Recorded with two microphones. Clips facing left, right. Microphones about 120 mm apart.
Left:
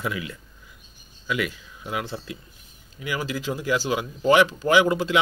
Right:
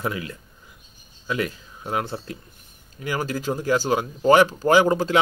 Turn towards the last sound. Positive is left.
turn(degrees=-40)  # may be behind; listen again after turning